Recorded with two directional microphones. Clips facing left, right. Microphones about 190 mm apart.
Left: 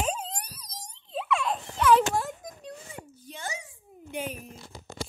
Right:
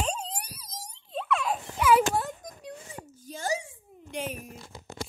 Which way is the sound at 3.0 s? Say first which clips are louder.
Right 2 dB; 40° right (ahead or behind).